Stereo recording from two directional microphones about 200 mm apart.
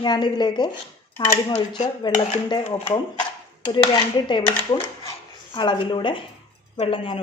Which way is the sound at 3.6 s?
20° left (ahead or behind).